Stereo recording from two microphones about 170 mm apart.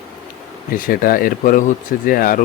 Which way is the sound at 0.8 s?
55° left (ahead or behind).